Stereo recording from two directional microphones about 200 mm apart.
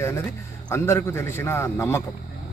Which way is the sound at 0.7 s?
10° left (ahead or behind).